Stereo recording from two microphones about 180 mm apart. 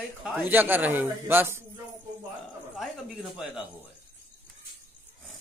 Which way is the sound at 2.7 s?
Centre (ahead or behind).